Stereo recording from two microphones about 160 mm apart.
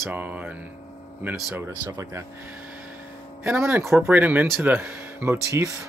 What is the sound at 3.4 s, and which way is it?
Speech, 15° right (ahead or behind).